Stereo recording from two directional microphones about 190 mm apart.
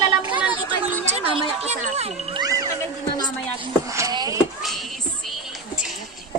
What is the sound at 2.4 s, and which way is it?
Speech, 15° right (ahead or behind).